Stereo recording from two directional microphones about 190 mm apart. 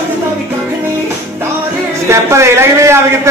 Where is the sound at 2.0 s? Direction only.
15° right (ahead or behind).